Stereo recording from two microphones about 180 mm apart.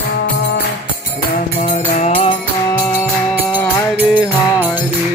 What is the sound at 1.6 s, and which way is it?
Music, 35° left (ahead or behind).